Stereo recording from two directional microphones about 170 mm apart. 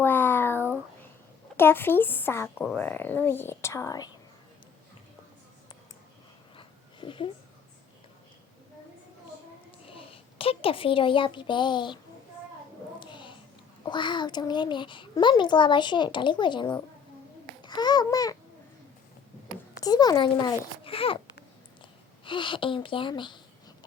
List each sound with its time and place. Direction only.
0.0 s a sound: 10° left (ahead or behind)
1.5 s speech: 15° left (ahead or behind)
6.6 s a sound: 30° left (ahead or behind)
9.8 s a child's voice: 30° left (ahead or behind)
13.0 s a sound: 25° left (ahead or behind)
13.8 s a child's voice: 25° left (ahead or behind)
17.6 s babbling: 25° left (ahead or behind)
19.8 s a child's voice: 25° left (ahead or behind)
22.2 s a child's voice: 30° left (ahead or behind)